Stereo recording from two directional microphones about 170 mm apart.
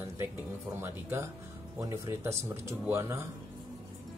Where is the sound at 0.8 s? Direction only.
15° right (ahead or behind).